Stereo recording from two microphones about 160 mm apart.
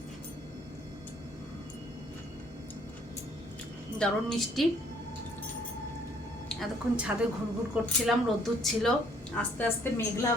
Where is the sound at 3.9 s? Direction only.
5° left (ahead or behind).